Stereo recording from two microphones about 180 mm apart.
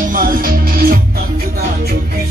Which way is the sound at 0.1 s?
50° right (ahead or behind).